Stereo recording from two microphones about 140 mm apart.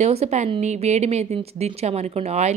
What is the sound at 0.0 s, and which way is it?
Speech, 50° right (ahead or behind).